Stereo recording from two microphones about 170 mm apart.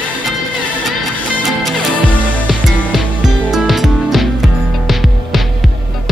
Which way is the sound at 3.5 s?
Centre (ahead or behind).